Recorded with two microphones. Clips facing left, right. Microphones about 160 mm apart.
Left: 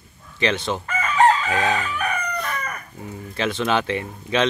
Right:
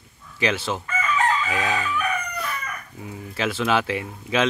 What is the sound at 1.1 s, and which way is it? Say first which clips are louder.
Chicken: left 6 dB; 35° left (ahead or behind).